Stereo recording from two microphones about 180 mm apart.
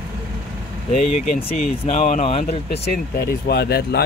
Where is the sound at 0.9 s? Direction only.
40° left (ahead or behind).